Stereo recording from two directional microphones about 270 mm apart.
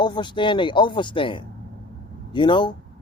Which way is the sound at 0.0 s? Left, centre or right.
Centre.